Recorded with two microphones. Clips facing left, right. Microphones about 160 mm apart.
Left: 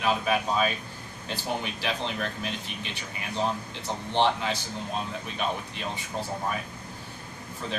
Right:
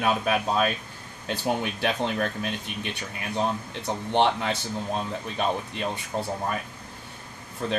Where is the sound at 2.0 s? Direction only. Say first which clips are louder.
Right 4 dB; 55° right (ahead or behind).